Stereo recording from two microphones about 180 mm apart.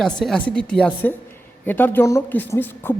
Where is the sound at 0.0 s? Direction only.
5° left (ahead or behind).